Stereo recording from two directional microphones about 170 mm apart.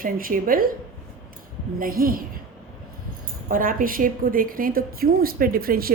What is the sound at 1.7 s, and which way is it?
Speech, 55° right (ahead or behind).